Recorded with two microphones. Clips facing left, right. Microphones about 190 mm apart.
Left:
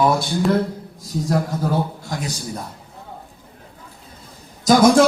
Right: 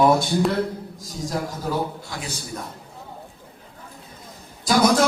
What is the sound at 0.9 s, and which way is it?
Speech, 60° left (ahead or behind).